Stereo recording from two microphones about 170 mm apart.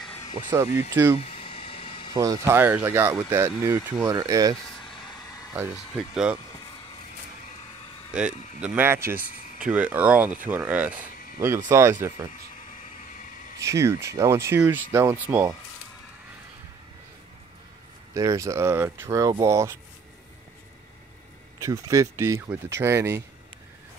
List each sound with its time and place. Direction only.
0.5 s speech: 15° right (ahead or behind)
1.2 s a sound: 35° left (ahead or behind)
2.1 s speech: 20° right (ahead or behind)
5.5 s speech: 10° right (ahead or behind)
8.1 s speech: 5° right (ahead or behind)
13.6 s speech: 15° right (ahead or behind)
18.1 s speech: 20° right (ahead or behind)
21.5 s speech: 20° right (ahead or behind)